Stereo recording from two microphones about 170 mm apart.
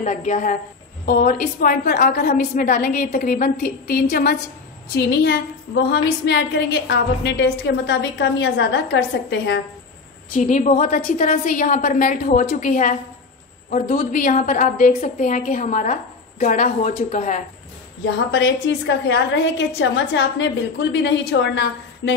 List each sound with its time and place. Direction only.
0.0 s a woman's voice: 45° left (ahead or behind)
4.9 s a woman's voice: 75° left (ahead or behind)
6.2 s a woman's voice: 90° left
10.3 s a woman's voice: 45° left (ahead or behind)
18.3 s a woman's voice: 90° left